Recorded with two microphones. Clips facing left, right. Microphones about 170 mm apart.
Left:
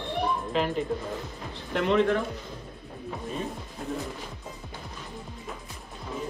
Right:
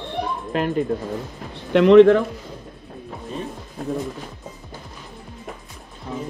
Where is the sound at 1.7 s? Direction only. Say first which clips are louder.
Right 13 dB; 80° right.